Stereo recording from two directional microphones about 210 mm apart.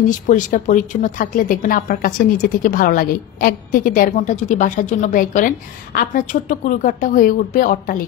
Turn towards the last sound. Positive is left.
turn(degrees=40)  # may be behind; listen again after turning